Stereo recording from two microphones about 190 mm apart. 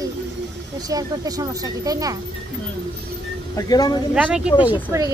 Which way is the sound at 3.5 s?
20° left (ahead or behind).